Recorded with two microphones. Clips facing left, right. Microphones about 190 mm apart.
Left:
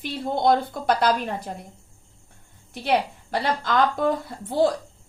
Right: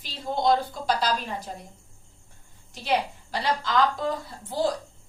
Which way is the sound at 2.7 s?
55° left (ahead or behind).